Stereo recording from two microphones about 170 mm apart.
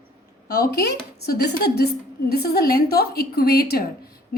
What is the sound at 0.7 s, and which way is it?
A woman's voice, 65° left (ahead or behind).